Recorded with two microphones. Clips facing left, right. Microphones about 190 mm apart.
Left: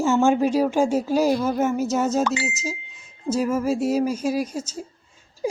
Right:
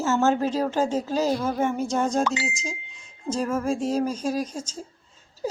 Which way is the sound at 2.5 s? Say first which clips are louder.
Left 3 dB; 5° left (ahead or behind).